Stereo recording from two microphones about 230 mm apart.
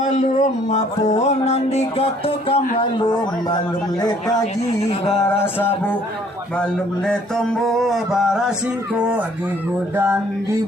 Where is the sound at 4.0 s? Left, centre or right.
Centre.